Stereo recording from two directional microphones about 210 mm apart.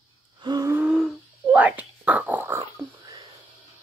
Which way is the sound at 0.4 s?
20° right (ahead or behind).